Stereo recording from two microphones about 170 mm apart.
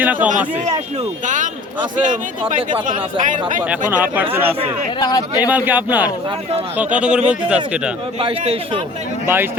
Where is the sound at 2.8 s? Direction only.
50° right (ahead or behind).